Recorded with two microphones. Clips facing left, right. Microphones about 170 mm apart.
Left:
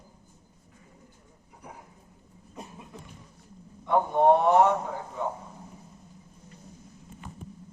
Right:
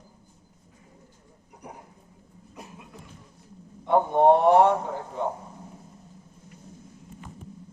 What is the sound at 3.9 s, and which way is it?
Speech, 30° right (ahead or behind).